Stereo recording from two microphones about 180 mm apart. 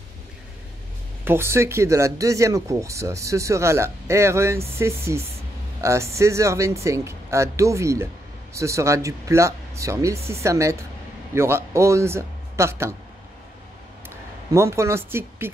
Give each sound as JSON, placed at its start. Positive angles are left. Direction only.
{"t": 1.2, "sound": "speech", "side_deg": -15}
{"t": 14.0, "sound": "speech", "side_deg": -15}